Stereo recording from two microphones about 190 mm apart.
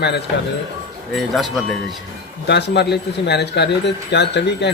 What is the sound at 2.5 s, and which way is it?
Speech, 60° left (ahead or behind).